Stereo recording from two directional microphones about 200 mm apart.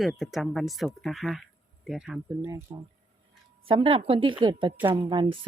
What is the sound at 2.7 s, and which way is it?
Speech, 20° right (ahead or behind).